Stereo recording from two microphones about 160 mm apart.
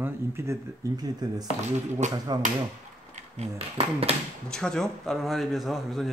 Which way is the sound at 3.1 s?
40° right (ahead or behind).